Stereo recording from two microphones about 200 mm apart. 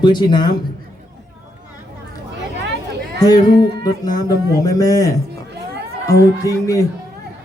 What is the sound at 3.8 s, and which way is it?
Speech, 20° left (ahead or behind).